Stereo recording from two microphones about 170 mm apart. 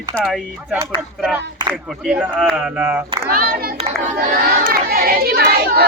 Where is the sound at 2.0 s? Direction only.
5° right (ahead or behind).